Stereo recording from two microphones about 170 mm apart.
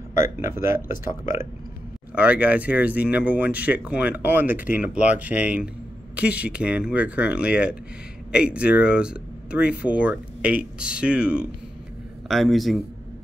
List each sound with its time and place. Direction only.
0.1 s speech: 45° left (ahead or behind)
0.5 s speech: 15° right (ahead or behind)
2.1 s speech: 10° right (ahead or behind)